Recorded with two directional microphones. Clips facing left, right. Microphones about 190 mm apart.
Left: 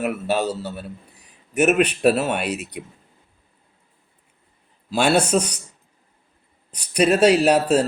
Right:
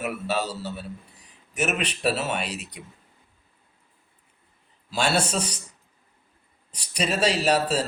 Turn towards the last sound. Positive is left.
turn(degrees=60)  # may be behind; listen again after turning